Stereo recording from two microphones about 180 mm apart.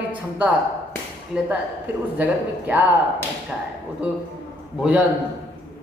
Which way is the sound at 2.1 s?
10° right (ahead or behind).